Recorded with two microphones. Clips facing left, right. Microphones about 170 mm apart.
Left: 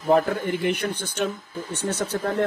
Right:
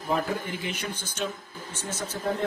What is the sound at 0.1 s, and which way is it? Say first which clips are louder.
A man's voice: left 8 dB; 55° left (ahead or behind).